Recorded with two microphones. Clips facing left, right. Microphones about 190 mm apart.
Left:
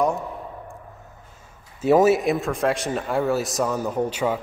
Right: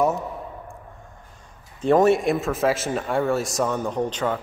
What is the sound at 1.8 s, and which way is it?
A man's voice, 5° left (ahead or behind).